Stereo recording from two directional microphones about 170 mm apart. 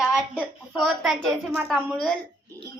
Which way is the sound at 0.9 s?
Centre (ahead or behind).